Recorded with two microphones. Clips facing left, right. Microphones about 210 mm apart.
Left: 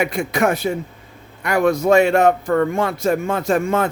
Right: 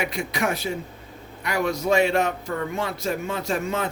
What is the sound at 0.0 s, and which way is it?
Speech, 50° left (ahead or behind).